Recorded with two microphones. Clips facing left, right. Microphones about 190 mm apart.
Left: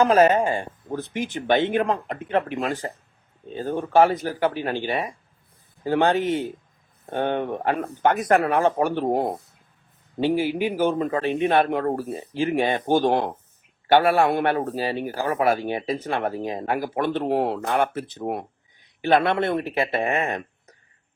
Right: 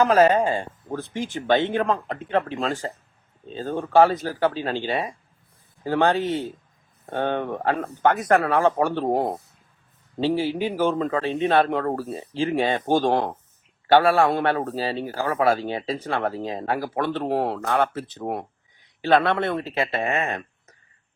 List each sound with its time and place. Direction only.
0.0 s a man's voice: 25° left (ahead or behind)
10.2 s a man's voice: 15° left (ahead or behind)